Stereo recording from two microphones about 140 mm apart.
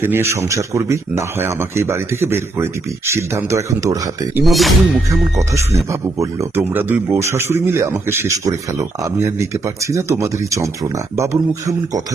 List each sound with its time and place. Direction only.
0.0 s speech: 15° right (ahead or behind)
4.4 s speech: centre (ahead or behind)
5.5 s speech: 20° right (ahead or behind)